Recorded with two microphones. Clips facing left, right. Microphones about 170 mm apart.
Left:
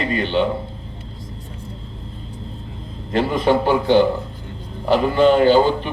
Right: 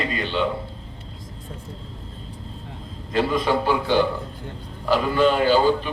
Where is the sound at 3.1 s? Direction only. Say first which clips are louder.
Left 4 dB; 25° left (ahead or behind).